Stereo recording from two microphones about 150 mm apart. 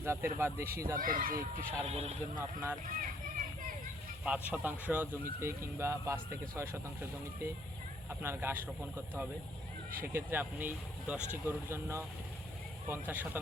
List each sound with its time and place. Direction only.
0.0 s speech: 15° right (ahead or behind)
0.9 s speech: 70° right (ahead or behind)
1.8 s speech: 45° right (ahead or behind)
2.8 s a sound: 60° right (ahead or behind)
4.2 s speech: 10° right (ahead or behind)
8.2 s speech: 15° right (ahead or behind)